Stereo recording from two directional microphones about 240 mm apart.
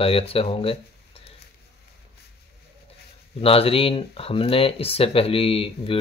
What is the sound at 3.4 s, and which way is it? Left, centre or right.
Speech, left.